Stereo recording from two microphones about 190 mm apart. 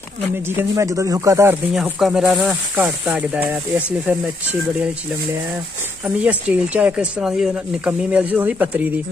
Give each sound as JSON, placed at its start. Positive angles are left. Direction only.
{"t": 0.6, "sound": "speech", "side_deg": -15}
{"t": 2.0, "sound": "speech", "side_deg": 0}
{"t": 6.0, "sound": "speech", "side_deg": -5}